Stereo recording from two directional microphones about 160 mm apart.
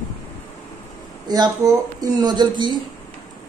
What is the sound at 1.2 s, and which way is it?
Speech, 25° right (ahead or behind).